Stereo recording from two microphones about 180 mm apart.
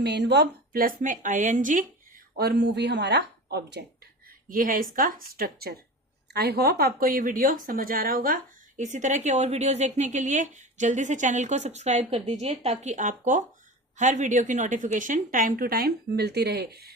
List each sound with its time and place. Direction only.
0.0 s speech: 70° right (ahead or behind); by 1.9 s 45° right (ahead or behind)
2.3 s speech: 60° right (ahead or behind)
4.4 s speech: 50° right (ahead or behind)